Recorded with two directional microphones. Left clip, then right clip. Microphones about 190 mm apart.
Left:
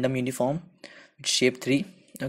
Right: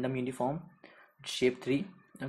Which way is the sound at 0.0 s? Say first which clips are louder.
Left 7 dB; 45° left (ahead or behind).